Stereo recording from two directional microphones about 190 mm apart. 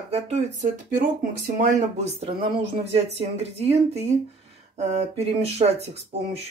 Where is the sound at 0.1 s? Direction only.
35° right (ahead or behind).